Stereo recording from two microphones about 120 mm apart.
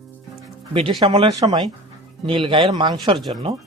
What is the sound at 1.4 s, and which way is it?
Speech, 35° right (ahead or behind).